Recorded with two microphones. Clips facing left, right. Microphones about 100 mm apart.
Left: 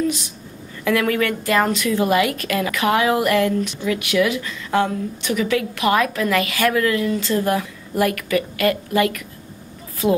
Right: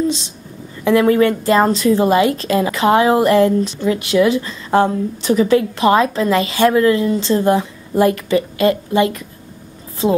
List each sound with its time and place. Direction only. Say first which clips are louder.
0.0 s a woman's voice: right 3 dB; 25° right (ahead or behind)